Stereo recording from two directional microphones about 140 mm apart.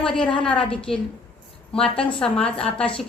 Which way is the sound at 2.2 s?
5° left (ahead or behind).